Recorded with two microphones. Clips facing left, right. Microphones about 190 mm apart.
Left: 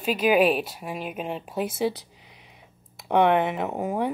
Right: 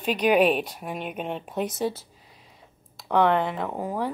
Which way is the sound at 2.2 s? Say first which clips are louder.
Left 1 dB; 90° left.